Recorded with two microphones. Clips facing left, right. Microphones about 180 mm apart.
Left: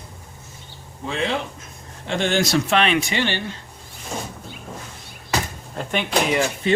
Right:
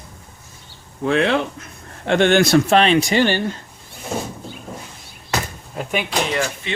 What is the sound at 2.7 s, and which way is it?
Speech, 35° right (ahead or behind).